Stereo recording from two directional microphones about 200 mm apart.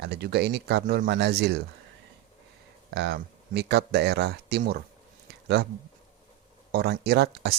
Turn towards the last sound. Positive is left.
turn(degrees=-55)  # may be behind; listen again after turning